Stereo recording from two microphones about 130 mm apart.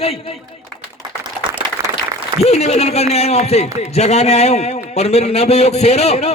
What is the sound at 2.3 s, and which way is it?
Speech, 55° left (ahead or behind).